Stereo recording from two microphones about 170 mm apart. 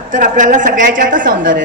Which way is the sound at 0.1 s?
50° right (ahead or behind).